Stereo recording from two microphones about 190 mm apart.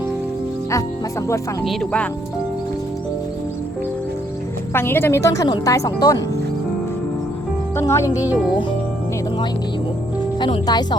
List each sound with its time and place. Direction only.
1.6 s speech: centre (ahead or behind)
4.7 s speech: 10° left (ahead or behind)
7.8 s speech: 15° left (ahead or behind)
10.4 s speech: 25° left (ahead or behind)